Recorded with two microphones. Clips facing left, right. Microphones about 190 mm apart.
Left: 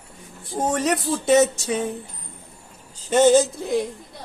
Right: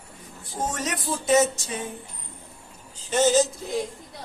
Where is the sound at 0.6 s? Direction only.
65° left (ahead or behind).